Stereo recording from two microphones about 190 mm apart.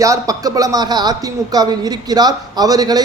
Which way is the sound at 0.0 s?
15° right (ahead or behind).